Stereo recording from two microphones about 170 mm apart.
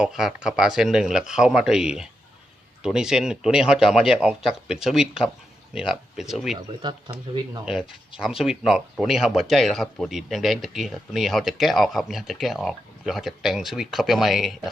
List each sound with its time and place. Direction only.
0.0 s speech: 5° right (ahead or behind)
6.6 s speech: 25° right (ahead or behind)
7.6 s speech: 5° right (ahead or behind)